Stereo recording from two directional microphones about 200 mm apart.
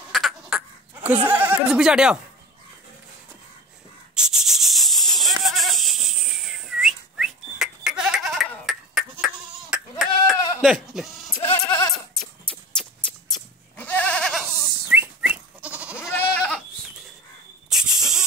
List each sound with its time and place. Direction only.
0.1 s a sound: centre (ahead or behind)
1.2 s speech: 10° right (ahead or behind)
4.1 s a sound: 5° right (ahead or behind)
10.6 s sheep: centre (ahead or behind)
11.3 s goat: 25° left (ahead or behind)
12.1 s a sound: centre (ahead or behind)
13.3 s goat: 10° left (ahead or behind)
14.4 s goat: 10° right (ahead or behind)
17.6 s snake: centre (ahead or behind)